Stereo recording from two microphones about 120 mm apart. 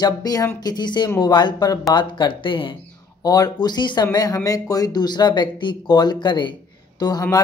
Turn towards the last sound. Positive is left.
turn(degrees=30)  # may be behind; listen again after turning